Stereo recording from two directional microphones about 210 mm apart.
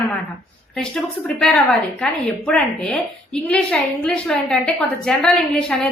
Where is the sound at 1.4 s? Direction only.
5° left (ahead or behind).